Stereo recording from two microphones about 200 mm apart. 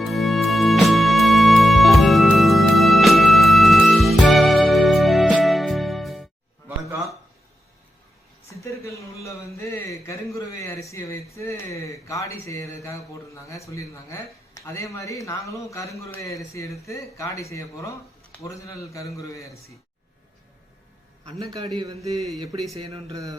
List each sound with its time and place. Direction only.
0.0 s music: centre (ahead or behind)
8.6 s a man's voice: 15° left (ahead or behind)
23.1 s mantra: 15° right (ahead or behind)